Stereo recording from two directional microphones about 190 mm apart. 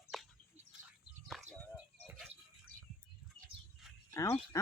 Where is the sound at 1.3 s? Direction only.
Centre (ahead or behind).